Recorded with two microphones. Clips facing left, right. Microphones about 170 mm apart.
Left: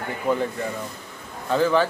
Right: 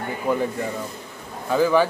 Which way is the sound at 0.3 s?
10° right (ahead or behind).